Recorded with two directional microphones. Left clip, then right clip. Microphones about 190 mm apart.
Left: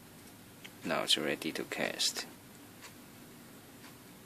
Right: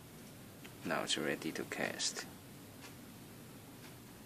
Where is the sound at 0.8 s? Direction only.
20° left (ahead or behind).